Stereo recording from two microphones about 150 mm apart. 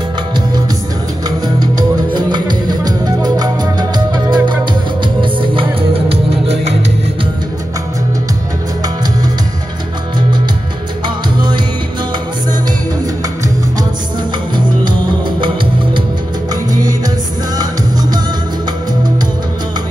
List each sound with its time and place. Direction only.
1.6 s music: 30° right (ahead or behind)